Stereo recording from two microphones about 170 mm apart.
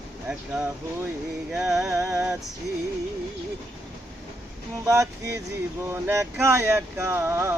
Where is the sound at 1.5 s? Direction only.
5° right (ahead or behind).